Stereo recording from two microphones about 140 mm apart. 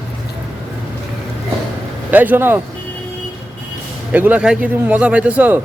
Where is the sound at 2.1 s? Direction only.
10° right (ahead or behind).